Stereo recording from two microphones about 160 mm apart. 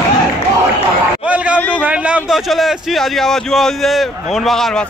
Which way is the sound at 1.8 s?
10° right (ahead or behind).